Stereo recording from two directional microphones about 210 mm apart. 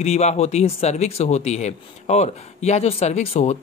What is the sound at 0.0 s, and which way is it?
Speech, 30° left (ahead or behind).